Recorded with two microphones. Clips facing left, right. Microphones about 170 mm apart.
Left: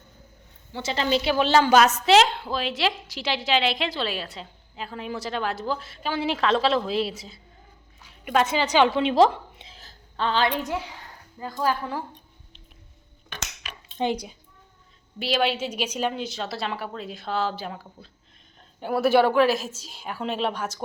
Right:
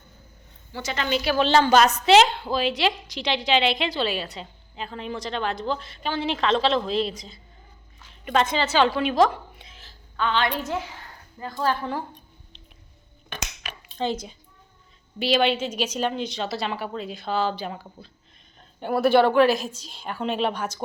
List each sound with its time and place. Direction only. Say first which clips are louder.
0.7 s a woman's voice: left 2 dB; 30° left (ahead or behind)
1.4 s a woman's voice: right 1 dB; 10° left (ahead or behind); by 10.5 s 35° left (ahead or behind)
10.5 s a woman's voice: even; 15° left (ahead or behind)
14.0 s a child's voice: left 1 dB; 15° left (ahead or behind)
15.2 s a woman's voice: right 3 dB; centre (ahead or behind)